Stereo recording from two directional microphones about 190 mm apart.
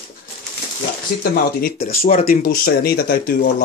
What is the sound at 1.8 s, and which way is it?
Speech, 50° left (ahead or behind).